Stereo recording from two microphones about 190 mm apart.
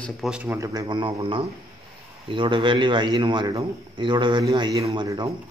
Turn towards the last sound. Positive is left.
turn(degrees=-20)  # may be behind; listen again after turning